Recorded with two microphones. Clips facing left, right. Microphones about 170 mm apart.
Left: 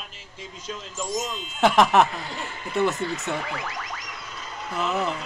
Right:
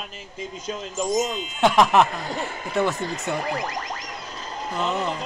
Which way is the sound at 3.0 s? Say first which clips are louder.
Right 1 dB; 40° right (ahead or behind).